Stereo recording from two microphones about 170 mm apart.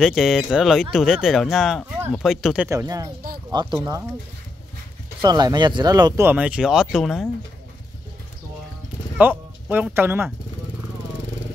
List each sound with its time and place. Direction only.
0.0 s speech: centre (ahead or behind)
2.7 s speech: 20° right (ahead or behind)
5.2 s speech: 25° right (ahead or behind)
6.2 s speech: 5° right (ahead or behind)
9.2 s speech: 10° right (ahead or behind)